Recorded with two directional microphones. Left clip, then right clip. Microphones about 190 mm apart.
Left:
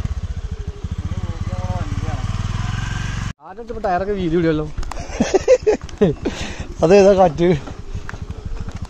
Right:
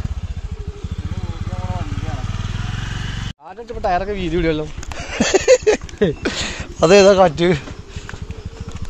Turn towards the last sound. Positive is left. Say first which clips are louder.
# right 1 dB
turn(degrees=10)  # may be behind; listen again after turning